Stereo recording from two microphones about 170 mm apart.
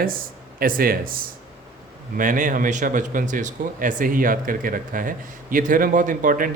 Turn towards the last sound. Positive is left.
turn(degrees=-55)  # may be behind; listen again after turning